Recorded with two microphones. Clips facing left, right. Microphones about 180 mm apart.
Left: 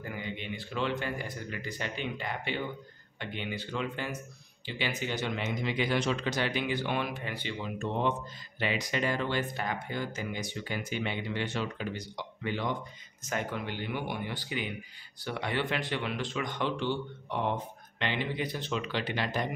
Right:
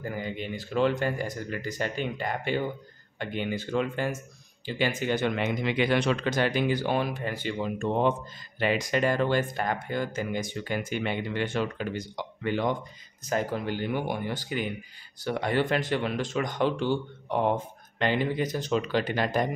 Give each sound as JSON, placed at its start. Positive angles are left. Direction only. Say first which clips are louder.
{"t": 0.0, "sound": "speech", "louder": "right 5 dB", "side_deg": -40}
{"t": 13.2, "sound": "speech", "louder": "right 6 dB", "side_deg": -35}